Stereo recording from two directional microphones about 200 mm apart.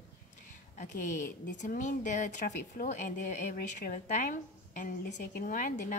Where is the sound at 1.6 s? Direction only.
40° left (ahead or behind).